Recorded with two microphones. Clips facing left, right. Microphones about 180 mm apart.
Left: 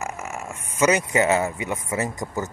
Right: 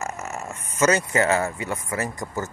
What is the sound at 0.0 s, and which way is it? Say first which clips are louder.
Speech: even; 10° left (ahead or behind).